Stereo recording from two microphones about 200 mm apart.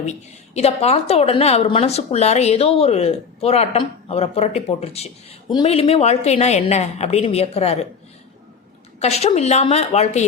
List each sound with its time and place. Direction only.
0.0 s a woman's voice: 35° left (ahead or behind)
9.0 s a woman's voice: 30° left (ahead or behind)